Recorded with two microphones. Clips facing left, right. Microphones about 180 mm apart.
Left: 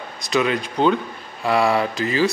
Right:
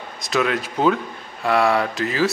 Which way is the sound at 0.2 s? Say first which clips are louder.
Left 1 dB; centre (ahead or behind).